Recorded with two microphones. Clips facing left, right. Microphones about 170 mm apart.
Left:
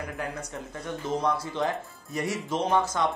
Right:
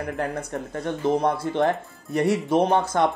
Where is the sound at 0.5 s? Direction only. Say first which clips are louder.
Right 7 dB; 60° right (ahead or behind).